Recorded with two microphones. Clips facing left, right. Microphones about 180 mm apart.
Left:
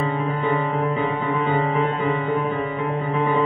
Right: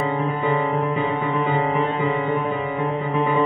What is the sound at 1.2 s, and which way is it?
Music, 25° right (ahead or behind).